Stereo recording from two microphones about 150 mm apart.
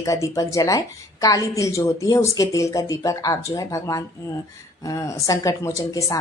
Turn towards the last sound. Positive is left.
turn(degrees=20)  # may be behind; listen again after turning